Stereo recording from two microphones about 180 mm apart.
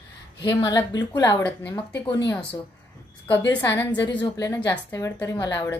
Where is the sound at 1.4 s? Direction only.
10° left (ahead or behind).